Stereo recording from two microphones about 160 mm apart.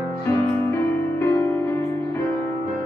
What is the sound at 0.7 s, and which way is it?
Music, 15° left (ahead or behind).